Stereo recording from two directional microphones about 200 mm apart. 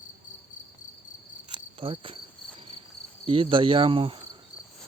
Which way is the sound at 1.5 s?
25° right (ahead or behind).